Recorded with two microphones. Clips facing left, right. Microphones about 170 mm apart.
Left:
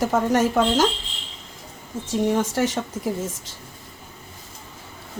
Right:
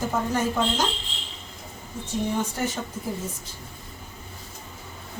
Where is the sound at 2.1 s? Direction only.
90° left.